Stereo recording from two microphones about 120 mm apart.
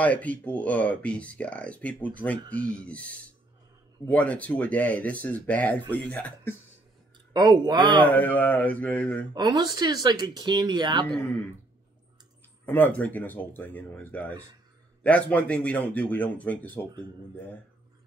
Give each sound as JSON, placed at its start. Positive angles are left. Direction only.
{"t": 0.0, "sound": "speech", "side_deg": 10}
{"t": 7.3, "sound": "speech", "side_deg": -35}
{"t": 8.1, "sound": "speech", "side_deg": 15}
{"t": 9.3, "sound": "speech", "side_deg": -35}
{"t": 12.6, "sound": "speech", "side_deg": 15}